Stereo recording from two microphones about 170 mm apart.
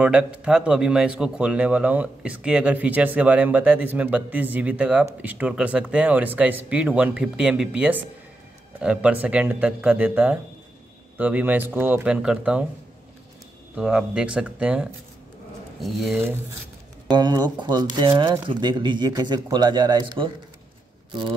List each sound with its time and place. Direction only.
0.0 s a man's voice: 5° right (ahead or behind)
13.7 s speech: 5° right (ahead or behind)
17.1 s speech: 25° right (ahead or behind)